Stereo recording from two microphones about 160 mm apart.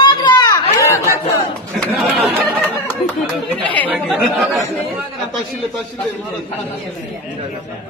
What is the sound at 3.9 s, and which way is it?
Speech, 5° right (ahead or behind).